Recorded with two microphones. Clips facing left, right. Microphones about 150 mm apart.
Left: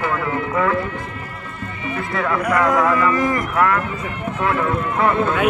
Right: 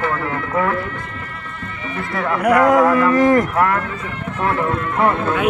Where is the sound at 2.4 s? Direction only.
55° right (ahead or behind).